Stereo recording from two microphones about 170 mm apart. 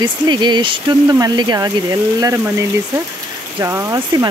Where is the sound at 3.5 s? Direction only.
15° right (ahead or behind).